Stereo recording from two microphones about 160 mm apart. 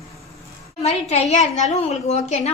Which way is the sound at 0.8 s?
45° left (ahead or behind).